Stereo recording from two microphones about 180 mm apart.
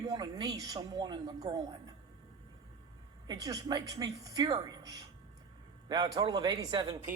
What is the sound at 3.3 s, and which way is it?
Speech, 20° right (ahead or behind).